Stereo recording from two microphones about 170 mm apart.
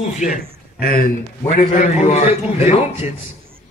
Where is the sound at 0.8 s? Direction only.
60° left (ahead or behind).